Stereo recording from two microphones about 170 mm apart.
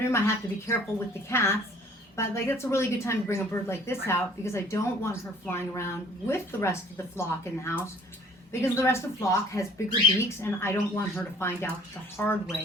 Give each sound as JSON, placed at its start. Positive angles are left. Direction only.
{"t": 0.0, "sound": "a woman's voice", "side_deg": 15}